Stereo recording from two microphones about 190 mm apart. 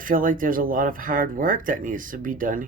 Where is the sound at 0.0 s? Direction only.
45° right (ahead or behind).